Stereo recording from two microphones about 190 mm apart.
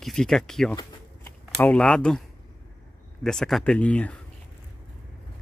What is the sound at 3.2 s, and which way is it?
Speech, centre (ahead or behind).